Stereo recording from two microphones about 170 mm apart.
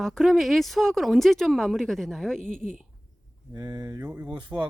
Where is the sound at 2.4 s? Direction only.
50° right (ahead or behind).